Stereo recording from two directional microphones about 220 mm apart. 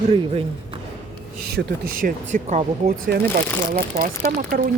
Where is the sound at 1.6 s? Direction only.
40° right (ahead or behind).